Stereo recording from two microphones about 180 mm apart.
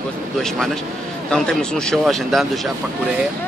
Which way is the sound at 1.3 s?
5° left (ahead or behind).